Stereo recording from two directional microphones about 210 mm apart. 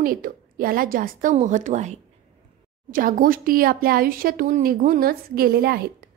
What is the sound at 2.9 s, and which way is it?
A woman's voice, 40° right (ahead or behind).